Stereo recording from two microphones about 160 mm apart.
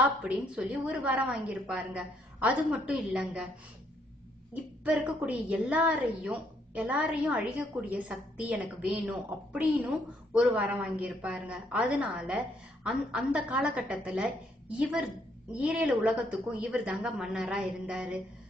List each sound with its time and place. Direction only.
0.0 s a woman's voice: 5° right (ahead or behind)
2.9 s a woman's voice: 10° right (ahead or behind)
4.8 s a woman's voice: 10° right (ahead or behind)